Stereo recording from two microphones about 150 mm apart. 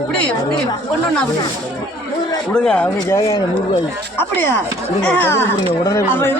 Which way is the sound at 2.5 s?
5° left (ahead or behind).